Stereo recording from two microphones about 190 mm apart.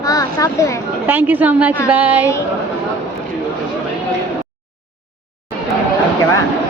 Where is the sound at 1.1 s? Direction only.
10° right (ahead or behind).